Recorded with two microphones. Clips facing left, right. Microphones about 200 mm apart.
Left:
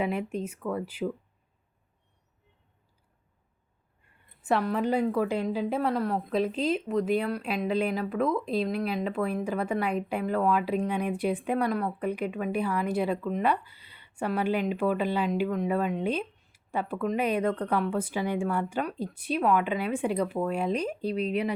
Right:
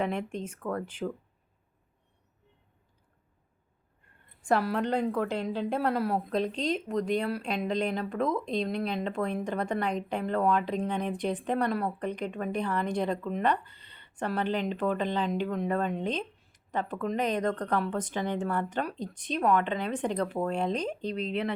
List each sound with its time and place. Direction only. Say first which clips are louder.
0.0 s speech: left 2 dB; 5° left (ahead or behind)
4.4 s a woman's voice: even; 5° left (ahead or behind)